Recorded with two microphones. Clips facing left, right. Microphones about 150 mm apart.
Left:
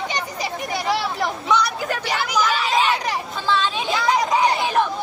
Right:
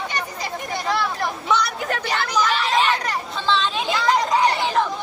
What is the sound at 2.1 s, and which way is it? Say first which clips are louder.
Chatter: even; 10° left (ahead or behind).